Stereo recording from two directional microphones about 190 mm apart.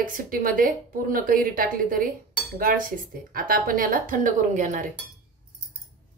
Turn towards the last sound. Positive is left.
turn(degrees=-40)  # may be behind; listen again after turning